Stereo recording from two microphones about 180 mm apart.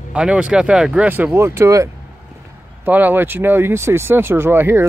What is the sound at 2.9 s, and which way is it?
Speech, 10° right (ahead or behind).